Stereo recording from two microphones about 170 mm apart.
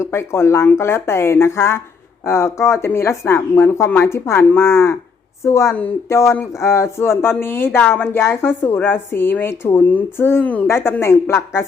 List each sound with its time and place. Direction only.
0.0 s speech: 15° left (ahead or behind)